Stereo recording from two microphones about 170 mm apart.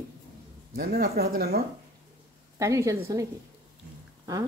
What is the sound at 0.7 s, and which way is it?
Speech, 65° right (ahead or behind).